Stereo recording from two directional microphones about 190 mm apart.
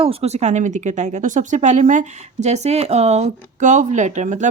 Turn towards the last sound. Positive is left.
turn(degrees=-40)  # may be behind; listen again after turning